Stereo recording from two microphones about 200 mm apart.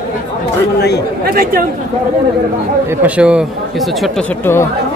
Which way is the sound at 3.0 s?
5° right (ahead or behind).